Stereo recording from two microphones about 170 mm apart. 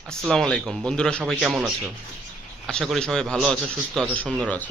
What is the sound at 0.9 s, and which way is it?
Speech, 5° left (ahead or behind).